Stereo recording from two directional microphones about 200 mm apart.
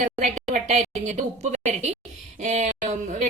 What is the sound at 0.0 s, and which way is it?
A woman's voice, 40° right (ahead or behind).